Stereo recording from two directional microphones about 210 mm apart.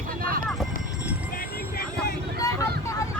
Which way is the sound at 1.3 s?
45° left (ahead or behind).